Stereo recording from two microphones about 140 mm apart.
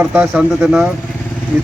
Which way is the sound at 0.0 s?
10° right (ahead or behind).